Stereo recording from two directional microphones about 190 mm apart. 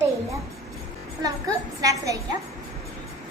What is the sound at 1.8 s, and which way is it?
Speech, 15° right (ahead or behind).